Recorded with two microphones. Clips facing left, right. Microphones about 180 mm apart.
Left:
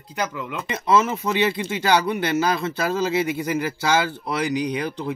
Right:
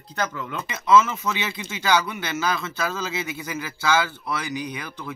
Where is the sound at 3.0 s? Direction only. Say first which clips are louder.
Left 8 dB; 55° left (ahead or behind).